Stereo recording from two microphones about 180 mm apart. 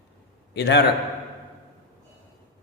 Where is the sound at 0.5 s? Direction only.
70° left (ahead or behind).